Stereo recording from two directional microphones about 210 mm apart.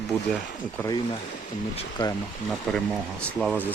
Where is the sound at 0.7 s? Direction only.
15° left (ahead or behind).